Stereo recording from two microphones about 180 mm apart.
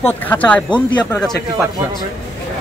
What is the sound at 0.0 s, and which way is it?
Speech, 10° left (ahead or behind).